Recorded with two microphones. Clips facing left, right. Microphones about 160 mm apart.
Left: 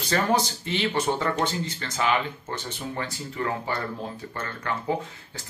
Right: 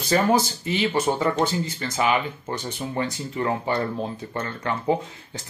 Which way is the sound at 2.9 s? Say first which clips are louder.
Right 6 dB; 25° right (ahead or behind).